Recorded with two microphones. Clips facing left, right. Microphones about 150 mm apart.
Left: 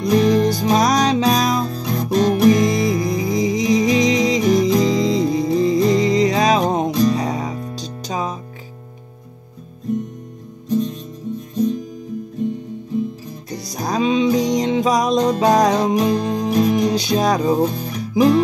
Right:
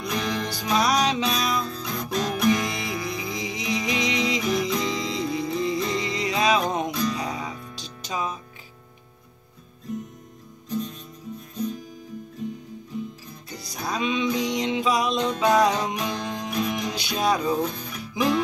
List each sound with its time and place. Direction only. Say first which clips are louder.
0.0 s music: left 13 dB; 35° left (ahead or behind)
13.5 s music: left 7 dB; 35° left (ahead or behind)